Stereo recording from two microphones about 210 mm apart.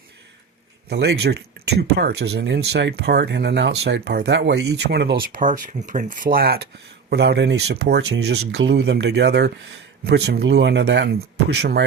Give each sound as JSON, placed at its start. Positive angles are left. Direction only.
{"t": 0.9, "sound": "speech", "side_deg": -55}